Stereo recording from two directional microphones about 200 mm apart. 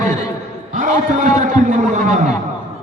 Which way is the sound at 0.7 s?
40° right (ahead or behind).